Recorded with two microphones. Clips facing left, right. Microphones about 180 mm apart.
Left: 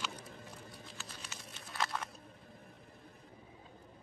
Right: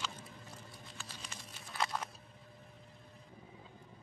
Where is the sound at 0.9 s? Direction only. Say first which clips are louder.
Even; 5° left (ahead or behind).